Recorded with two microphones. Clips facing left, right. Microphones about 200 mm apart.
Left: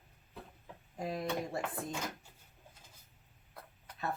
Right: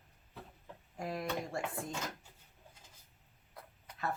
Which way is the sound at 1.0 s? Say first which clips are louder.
Left 2 dB; 20° left (ahead or behind).